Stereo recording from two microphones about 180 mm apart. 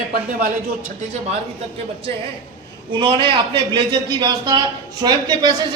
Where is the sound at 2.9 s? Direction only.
25° right (ahead or behind).